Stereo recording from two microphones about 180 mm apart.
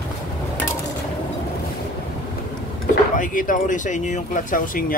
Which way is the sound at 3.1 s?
50° left (ahead or behind).